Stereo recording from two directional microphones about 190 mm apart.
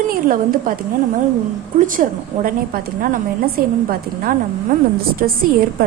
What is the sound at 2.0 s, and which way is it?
A woman's voice, 50° right (ahead or behind).